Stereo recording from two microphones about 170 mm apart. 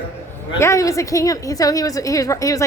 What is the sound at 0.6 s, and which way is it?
A woman's voice, 20° left (ahead or behind).